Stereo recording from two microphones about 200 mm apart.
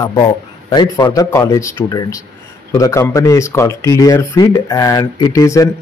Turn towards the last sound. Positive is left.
turn(degrees=15)  # may be behind; listen again after turning